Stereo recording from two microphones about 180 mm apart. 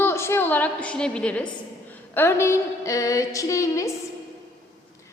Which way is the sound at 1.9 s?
10° left (ahead or behind).